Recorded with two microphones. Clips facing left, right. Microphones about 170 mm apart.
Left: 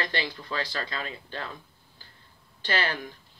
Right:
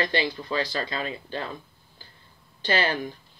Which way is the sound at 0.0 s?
15° right (ahead or behind).